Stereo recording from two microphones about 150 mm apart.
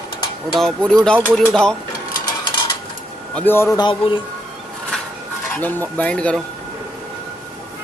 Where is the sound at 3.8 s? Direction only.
30° left (ahead or behind).